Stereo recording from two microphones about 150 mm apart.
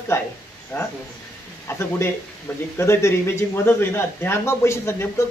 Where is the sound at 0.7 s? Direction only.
15° left (ahead or behind).